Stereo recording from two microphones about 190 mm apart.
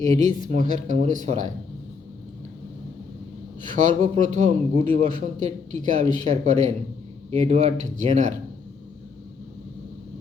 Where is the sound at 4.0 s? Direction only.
40° right (ahead or behind).